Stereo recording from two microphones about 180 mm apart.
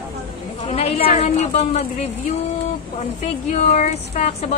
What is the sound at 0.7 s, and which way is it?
Speech, 35° left (ahead or behind).